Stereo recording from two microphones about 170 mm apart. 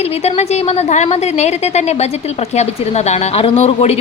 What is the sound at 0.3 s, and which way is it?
A woman's voice, 40° left (ahead or behind).